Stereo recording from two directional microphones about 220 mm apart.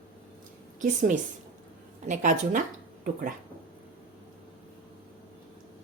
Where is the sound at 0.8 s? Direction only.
35° right (ahead or behind).